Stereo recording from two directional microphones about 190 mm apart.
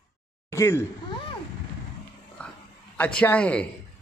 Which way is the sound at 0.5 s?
15° left (ahead or behind).